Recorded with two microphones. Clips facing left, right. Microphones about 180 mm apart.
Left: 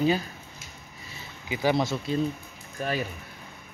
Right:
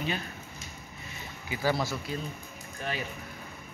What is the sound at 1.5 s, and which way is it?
Speech, 20° left (ahead or behind).